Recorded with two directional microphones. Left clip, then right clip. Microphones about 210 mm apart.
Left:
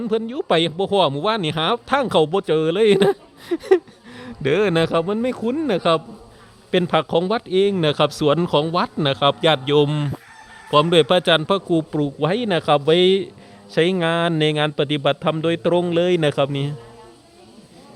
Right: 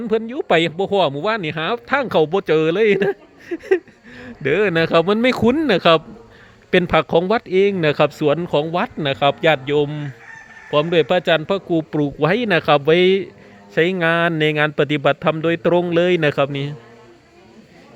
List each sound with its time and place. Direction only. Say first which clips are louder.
0.0 s speech: right 2 dB; centre (ahead or behind)
5.0 s speech: right 6 dB; 15° right (ahead or behind)
5.6 s speech: right 3 dB; 5° right (ahead or behind)
8.4 s a man's voice: even; 10° left (ahead or behind)